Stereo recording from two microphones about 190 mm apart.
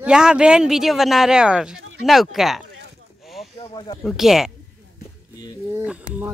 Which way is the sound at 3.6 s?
25° left (ahead or behind).